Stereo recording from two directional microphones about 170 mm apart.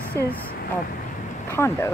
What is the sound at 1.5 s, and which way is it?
Speech, 15° left (ahead or behind).